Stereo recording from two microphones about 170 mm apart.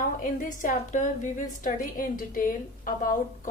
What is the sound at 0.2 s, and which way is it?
A woman's voice, 50° left (ahead or behind).